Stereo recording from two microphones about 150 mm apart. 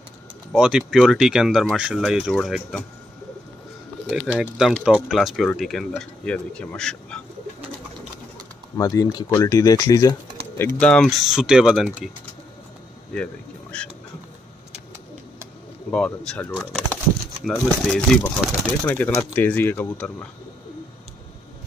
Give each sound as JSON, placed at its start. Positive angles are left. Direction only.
{"t": 0.5, "sound": "speech", "side_deg": -5}
{"t": 4.4, "sound": "speech", "side_deg": -5}
{"t": 8.7, "sound": "speech", "side_deg": 25}
{"t": 10.6, "sound": "speech", "side_deg": 10}
{"t": 13.1, "sound": "speech", "side_deg": 5}
{"t": 15.9, "sound": "speech", "side_deg": 5}